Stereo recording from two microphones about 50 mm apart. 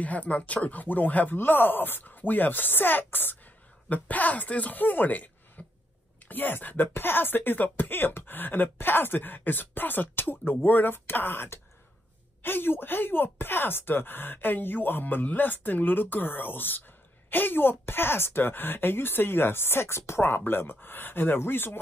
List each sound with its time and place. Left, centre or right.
0.0 s speech: left
3.9 s speech: left
5.6 s a sound: left
6.2 s speech: left